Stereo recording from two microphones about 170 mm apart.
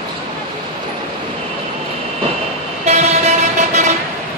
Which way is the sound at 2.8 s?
40° right (ahead or behind).